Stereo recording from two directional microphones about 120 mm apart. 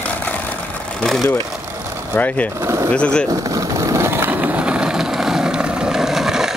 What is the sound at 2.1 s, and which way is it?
Speech, 15° left (ahead or behind).